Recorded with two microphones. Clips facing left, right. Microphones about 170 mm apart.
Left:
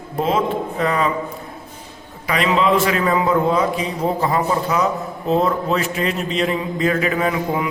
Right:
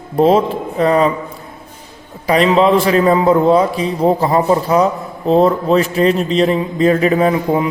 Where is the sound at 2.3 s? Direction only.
35° right (ahead or behind).